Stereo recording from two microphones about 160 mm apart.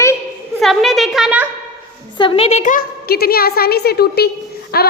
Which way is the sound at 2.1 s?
35° left (ahead or behind).